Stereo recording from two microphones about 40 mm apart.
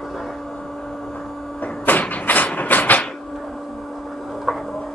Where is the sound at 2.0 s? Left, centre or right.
Left.